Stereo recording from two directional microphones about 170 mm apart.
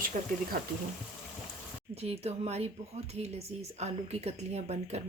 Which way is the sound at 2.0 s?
35° right (ahead or behind).